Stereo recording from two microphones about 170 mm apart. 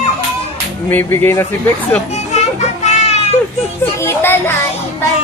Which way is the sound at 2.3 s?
40° left (ahead or behind).